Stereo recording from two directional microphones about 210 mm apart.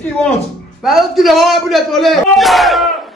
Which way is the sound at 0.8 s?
Centre (ahead or behind).